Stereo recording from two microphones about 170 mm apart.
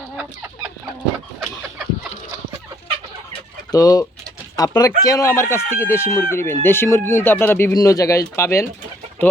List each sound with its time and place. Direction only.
3.7 s speech: 20° left (ahead or behind)